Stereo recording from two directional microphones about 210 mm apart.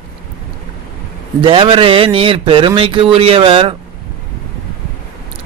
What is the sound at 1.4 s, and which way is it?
Speech, 25° right (ahead or behind).